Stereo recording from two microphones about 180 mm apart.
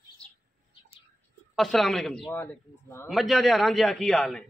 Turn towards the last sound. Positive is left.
turn(degrees=0)  # may be behind; listen again after turning